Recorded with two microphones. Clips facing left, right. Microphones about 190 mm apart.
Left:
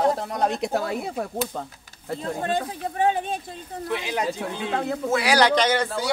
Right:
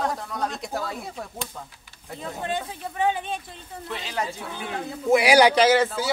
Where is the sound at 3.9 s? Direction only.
15° left (ahead or behind).